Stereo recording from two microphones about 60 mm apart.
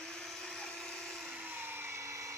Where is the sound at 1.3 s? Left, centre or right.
Right.